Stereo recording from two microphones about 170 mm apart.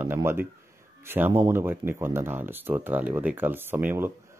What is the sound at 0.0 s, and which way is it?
Speech, 15° right (ahead or behind).